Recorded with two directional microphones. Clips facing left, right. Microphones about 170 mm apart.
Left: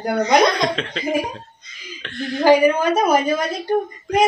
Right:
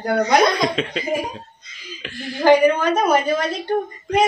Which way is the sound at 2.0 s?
5° right (ahead or behind).